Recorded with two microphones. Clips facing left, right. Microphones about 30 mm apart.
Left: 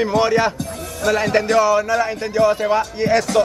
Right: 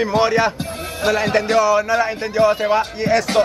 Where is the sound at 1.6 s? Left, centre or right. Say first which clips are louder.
Even; centre.